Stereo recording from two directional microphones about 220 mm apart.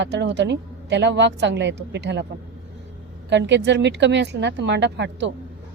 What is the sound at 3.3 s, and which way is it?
Speech, 55° right (ahead or behind).